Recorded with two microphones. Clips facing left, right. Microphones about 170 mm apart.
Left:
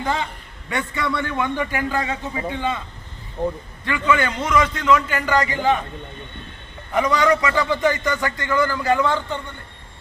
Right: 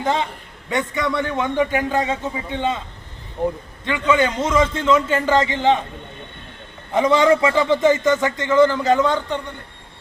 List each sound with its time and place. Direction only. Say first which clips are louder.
0.0 s a man's voice: right 3 dB; 20° right (ahead or behind)
3.8 s a man's voice: right 2 dB; 20° right (ahead or behind)
6.9 s a man's voice: right 3 dB; 25° right (ahead or behind)